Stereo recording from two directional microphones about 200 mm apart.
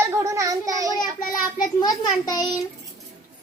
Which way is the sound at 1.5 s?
20° left (ahead or behind).